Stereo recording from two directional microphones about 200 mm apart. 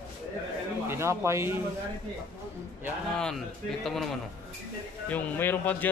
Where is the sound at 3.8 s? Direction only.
Centre (ahead or behind).